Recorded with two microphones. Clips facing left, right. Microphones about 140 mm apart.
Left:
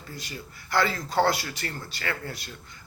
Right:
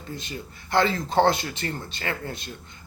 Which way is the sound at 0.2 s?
20° right (ahead or behind).